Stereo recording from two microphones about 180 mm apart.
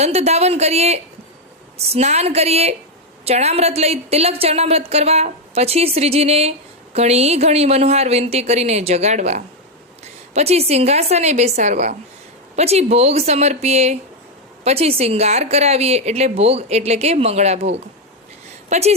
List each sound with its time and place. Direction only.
0.0 s a woman's voice: 35° right (ahead or behind)